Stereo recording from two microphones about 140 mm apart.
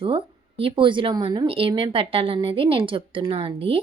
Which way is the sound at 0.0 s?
40° right (ahead or behind).